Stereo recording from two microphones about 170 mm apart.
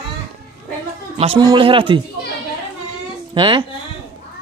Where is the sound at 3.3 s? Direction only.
30° right (ahead or behind).